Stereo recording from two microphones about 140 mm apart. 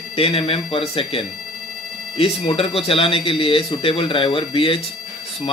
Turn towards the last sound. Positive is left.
turn(degrees=40)  # may be behind; listen again after turning